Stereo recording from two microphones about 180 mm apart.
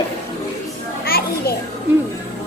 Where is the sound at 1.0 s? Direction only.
55° left (ahead or behind).